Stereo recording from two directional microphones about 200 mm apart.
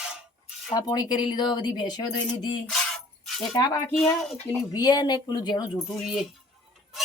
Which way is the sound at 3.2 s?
Centre (ahead or behind).